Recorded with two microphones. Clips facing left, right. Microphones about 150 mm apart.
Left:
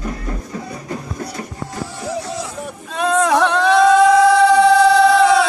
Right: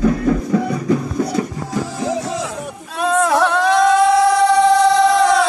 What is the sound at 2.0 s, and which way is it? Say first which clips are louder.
Music: right 1 dB; 90° right.